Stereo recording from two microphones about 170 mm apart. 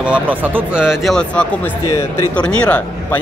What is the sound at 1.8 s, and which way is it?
Speech, 20° left (ahead or behind).